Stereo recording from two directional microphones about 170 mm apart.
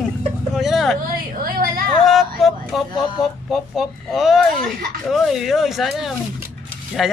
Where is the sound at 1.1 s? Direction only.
55° right (ahead or behind).